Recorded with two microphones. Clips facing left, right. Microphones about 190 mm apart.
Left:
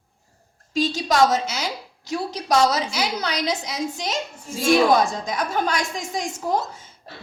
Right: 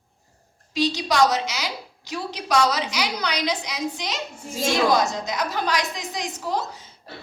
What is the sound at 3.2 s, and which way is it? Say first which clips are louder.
A woman's voice: left 1 dB; 45° left (ahead or behind).